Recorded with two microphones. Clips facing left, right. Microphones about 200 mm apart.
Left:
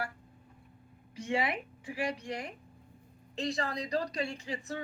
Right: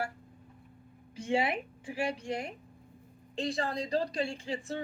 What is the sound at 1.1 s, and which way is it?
Speech, 30° right (ahead or behind).